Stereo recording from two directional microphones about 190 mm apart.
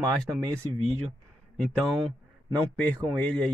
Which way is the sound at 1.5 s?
5° left (ahead or behind).